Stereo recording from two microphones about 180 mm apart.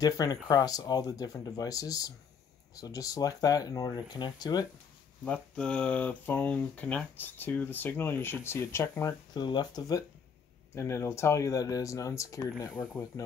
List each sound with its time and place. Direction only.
0.0 s speech: 20° left (ahead or behind)
5.2 s speech: 5° left (ahead or behind)